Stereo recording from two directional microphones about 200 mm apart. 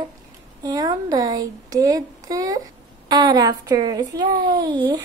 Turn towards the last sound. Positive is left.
turn(degrees=-20)  # may be behind; listen again after turning